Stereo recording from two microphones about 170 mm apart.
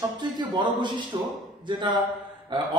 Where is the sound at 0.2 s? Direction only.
25° right (ahead or behind).